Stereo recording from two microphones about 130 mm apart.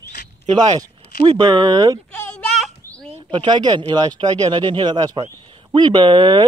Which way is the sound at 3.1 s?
40° right (ahead or behind).